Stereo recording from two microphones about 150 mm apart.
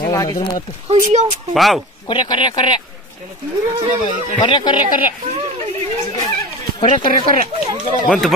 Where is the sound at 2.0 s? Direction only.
30° left (ahead or behind).